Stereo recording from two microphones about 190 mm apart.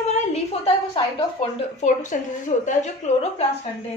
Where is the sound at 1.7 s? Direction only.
40° left (ahead or behind).